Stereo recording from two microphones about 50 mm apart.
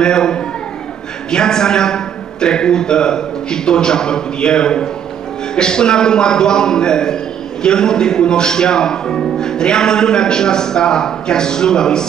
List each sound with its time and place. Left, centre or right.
0.0 s a man's voice: centre